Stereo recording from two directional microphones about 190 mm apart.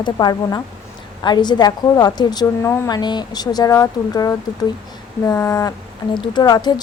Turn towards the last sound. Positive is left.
turn(degrees=20)  # may be behind; listen again after turning